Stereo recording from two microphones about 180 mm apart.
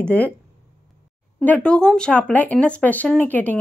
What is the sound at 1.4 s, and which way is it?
Speech, 5° left (ahead or behind).